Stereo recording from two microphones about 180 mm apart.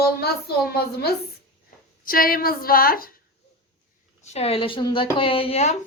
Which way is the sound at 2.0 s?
55° left (ahead or behind).